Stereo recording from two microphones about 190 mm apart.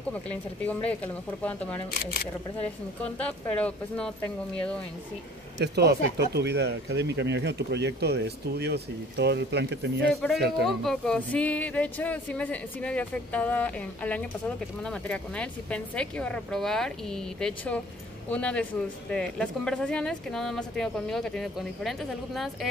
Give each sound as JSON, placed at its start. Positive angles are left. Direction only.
{"t": 0.1, "sound": "speech", "side_deg": 10}
{"t": 5.6, "sound": "speech", "side_deg": -60}
{"t": 10.1, "sound": "speech", "side_deg": 0}